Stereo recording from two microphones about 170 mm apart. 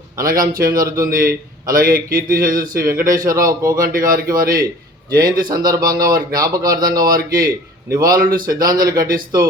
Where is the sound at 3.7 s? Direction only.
55° right (ahead or behind).